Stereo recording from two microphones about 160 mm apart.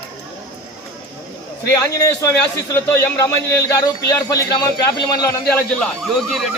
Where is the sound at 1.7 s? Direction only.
20° left (ahead or behind).